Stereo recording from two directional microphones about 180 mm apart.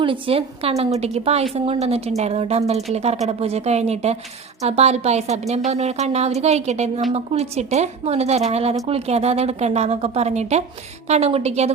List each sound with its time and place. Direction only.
0.0 s a woman's voice: 30° right (ahead or behind)